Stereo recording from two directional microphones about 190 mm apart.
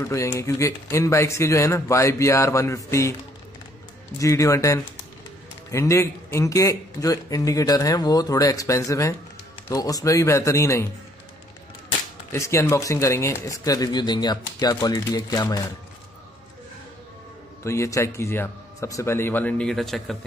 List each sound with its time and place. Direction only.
0.0 s a man's voice: 15° left (ahead or behind)
4.2 s a man's voice: 15° left (ahead or behind)
12.3 s a man's voice: 15° left (ahead or behind)
17.6 s a man's voice: 15° left (ahead or behind)